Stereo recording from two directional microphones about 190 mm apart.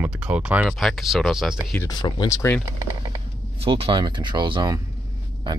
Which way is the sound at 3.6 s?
30° right (ahead or behind).